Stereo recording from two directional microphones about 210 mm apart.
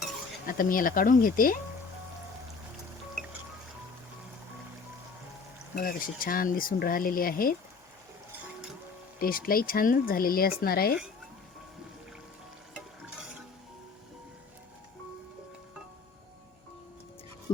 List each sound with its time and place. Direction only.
0.4 s speech: 40° left (ahead or behind)
5.7 s speech: 40° left (ahead or behind)
9.2 s speech: 45° left (ahead or behind)